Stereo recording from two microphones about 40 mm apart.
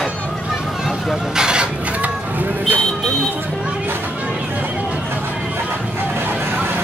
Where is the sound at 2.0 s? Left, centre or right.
Right.